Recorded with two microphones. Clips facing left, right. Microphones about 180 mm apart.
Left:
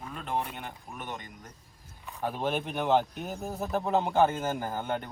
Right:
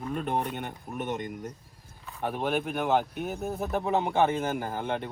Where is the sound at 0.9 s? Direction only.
55° right (ahead or behind).